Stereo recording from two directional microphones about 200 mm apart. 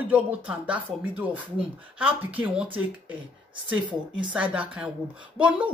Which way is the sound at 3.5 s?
25° right (ahead or behind).